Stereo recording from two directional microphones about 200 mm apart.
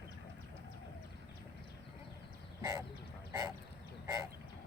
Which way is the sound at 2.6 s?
15° right (ahead or behind).